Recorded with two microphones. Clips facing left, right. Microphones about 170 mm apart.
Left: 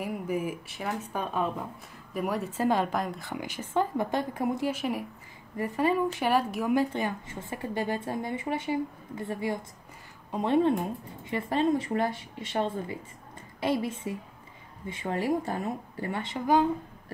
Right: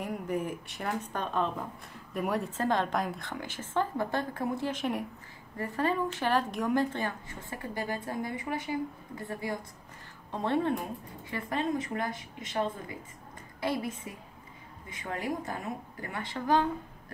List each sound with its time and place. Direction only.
0.0 s a woman's voice: 5° left (ahead or behind); by 16.3 s 25° left (ahead or behind)
16.3 s a woman's voice: 10° left (ahead or behind)